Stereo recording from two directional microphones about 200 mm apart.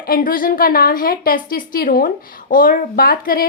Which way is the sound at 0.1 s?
45° left (ahead or behind).